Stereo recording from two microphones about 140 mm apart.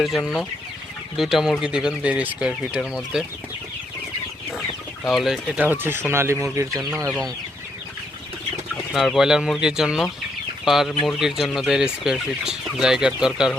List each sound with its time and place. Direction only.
0.0 s speech: centre (ahead or behind)
5.0 s speech: centre (ahead or behind); by 7.1 s 20° right (ahead or behind)
8.7 s speech: centre (ahead or behind)